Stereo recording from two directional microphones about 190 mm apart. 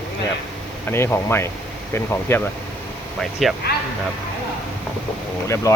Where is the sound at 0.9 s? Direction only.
10° left (ahead or behind).